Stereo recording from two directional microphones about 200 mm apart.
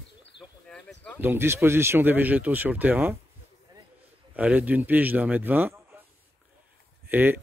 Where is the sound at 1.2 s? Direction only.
10° right (ahead or behind).